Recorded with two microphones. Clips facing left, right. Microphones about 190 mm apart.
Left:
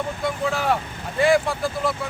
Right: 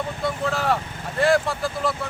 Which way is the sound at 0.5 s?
Centre (ahead or behind).